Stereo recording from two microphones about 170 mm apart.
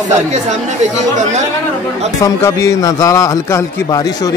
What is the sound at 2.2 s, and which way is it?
A man's voice, 15° left (ahead or behind).